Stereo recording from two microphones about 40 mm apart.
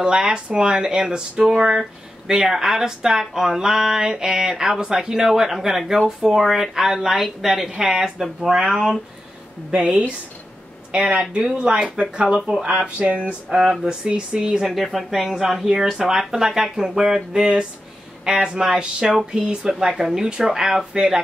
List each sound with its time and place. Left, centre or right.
0.0 s speech: right
8.7 s speech: centre
9.8 s speech: right
11.1 s speech: right
13.5 s speech: centre
13.8 s speech: right
14.7 s speech: centre
19.1 s speech: centre